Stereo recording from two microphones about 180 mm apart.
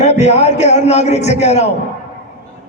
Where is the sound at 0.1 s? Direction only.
35° left (ahead or behind).